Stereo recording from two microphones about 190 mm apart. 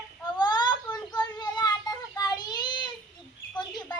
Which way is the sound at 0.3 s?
20° left (ahead or behind).